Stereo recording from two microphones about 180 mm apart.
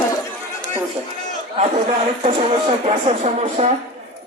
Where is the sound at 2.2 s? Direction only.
35° right (ahead or behind).